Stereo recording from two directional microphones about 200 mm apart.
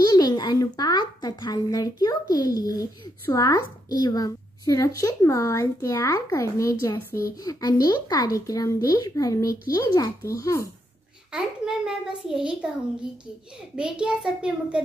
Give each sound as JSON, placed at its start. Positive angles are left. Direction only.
{"t": 0.0, "sound": "speech", "side_deg": 20}
{"t": 11.3, "sound": "a child's voice", "side_deg": -5}
{"t": 13.7, "sound": "a child's voice", "side_deg": -5}